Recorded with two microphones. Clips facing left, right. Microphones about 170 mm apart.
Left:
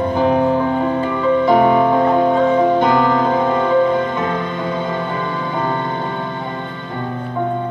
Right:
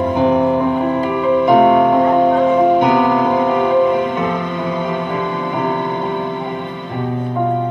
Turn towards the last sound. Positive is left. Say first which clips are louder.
# right 2 dB
turn(degrees=-15)  # may be behind; listen again after turning